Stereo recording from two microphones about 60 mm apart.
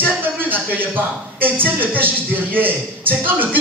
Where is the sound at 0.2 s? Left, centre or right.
Right.